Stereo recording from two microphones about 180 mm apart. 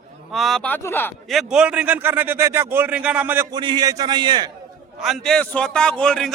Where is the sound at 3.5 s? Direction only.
25° right (ahead or behind).